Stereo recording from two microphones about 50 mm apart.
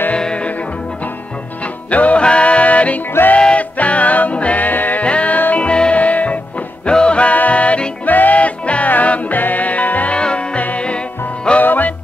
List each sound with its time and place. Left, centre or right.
0.1 s music: left
1.9 s music: left
5.0 s music: left
11.6 s music: left